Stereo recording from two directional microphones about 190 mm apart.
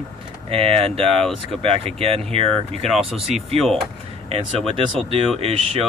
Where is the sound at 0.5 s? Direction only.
30° right (ahead or behind).